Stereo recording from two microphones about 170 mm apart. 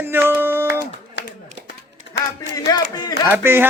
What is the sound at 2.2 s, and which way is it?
Speech, 90° left.